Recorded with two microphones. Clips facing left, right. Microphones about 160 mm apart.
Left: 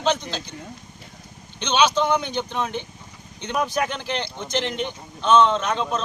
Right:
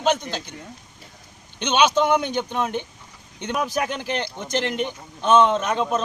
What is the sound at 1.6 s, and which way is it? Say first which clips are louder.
Speech: right 1 dB; 50° right (ahead or behind).